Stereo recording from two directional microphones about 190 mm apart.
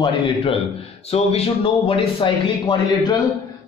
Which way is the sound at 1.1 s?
30° left (ahead or behind).